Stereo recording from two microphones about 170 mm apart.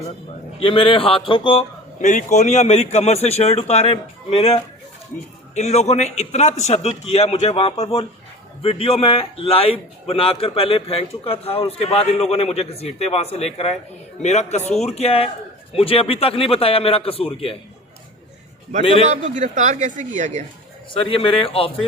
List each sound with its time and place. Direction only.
0.6 s a man's voice: 30° left (ahead or behind)
2.0 s a man's voice: 45° left (ahead or behind)
19.0 s speech: 45° right (ahead or behind)
20.9 s a man's voice: 30° left (ahead or behind)